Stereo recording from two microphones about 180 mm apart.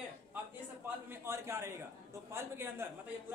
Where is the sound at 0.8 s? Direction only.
10° right (ahead or behind).